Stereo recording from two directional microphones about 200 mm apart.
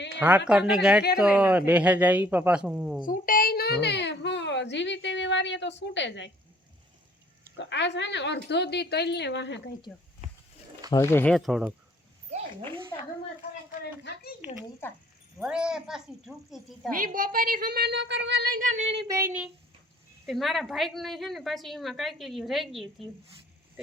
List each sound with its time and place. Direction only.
0.2 s a woman's voice: 10° right (ahead or behind)
3.1 s a child's voice: 45° left (ahead or behind); by 6.3 s 65° left (ahead or behind)
7.5 s a child's voice: 65° left (ahead or behind)
10.2 s a sound: 35° right (ahead or behind)
10.9 s a woman's voice: 10° left (ahead or behind)
12.9 s a woman's voice: 15° left (ahead or behind)
14.0 s speech: 50° left (ahead or behind)
14.8 s a woman's voice: 10° left (ahead or behind)
15.4 s a woman's voice: 5° right (ahead or behind)
16.9 s a woman's voice: 45° right (ahead or behind)
18.3 s female singing: 50° right (ahead or behind); by 19.0 s 30° right (ahead or behind)
19.0 s speech: 15° right (ahead or behind)
20.2 s a woman's voice: centre (ahead or behind)